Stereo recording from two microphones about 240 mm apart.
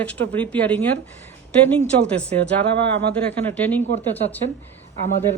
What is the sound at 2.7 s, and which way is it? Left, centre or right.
Speech, right.